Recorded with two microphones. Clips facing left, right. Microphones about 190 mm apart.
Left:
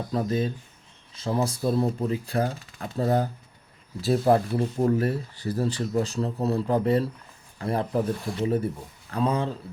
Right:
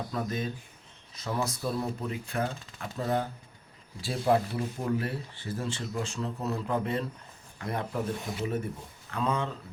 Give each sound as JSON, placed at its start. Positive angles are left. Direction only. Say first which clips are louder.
{"t": 0.1, "sound": "speech", "louder": "left 10 dB", "side_deg": 30}